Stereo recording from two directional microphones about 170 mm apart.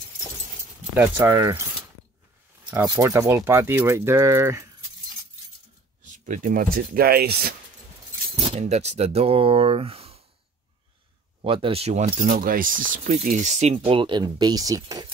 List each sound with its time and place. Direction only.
0.9 s speech: 10° right (ahead or behind)
2.8 s speech: 20° right (ahead or behind)
6.0 s speech: 50° right (ahead or behind); by 7.5 s 65° right (ahead or behind)
8.4 s speech: 35° right (ahead or behind)
11.4 s speech: 30° right (ahead or behind)
12.2 s speech: 55° right (ahead or behind); by 15.0 s 20° right (ahead or behind)